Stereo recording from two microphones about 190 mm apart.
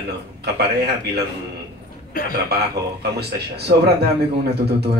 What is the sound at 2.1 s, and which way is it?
Speech, 50° left (ahead or behind).